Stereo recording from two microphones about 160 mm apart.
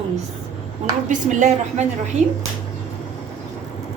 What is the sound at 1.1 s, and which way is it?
Speech, 50° right (ahead or behind).